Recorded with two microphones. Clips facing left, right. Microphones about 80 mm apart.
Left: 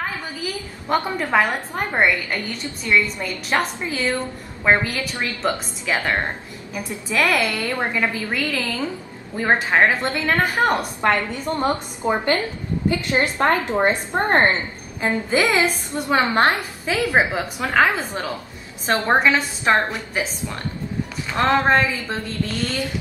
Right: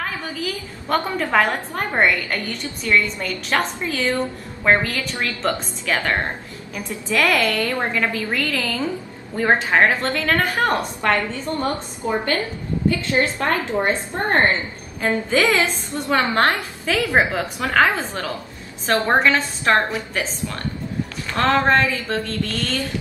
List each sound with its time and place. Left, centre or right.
0.8 s a woman's voice: centre